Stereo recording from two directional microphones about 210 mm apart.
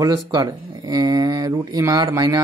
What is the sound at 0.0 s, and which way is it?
Speech, 15° right (ahead or behind).